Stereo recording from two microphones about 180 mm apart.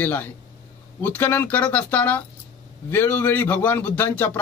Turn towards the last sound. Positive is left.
turn(degrees=10)  # may be behind; listen again after turning